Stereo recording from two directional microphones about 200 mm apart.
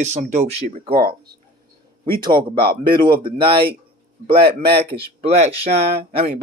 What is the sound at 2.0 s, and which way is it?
Speech, 25° right (ahead or behind).